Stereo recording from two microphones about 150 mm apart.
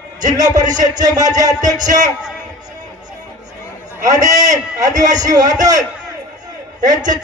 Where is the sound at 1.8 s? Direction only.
55° right (ahead or behind).